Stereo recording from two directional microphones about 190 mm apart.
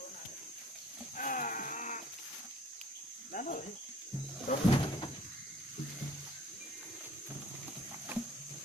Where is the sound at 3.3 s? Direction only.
45° left (ahead or behind).